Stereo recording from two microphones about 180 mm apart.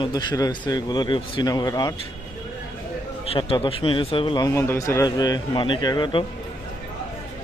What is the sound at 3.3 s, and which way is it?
A man's voice, 30° left (ahead or behind).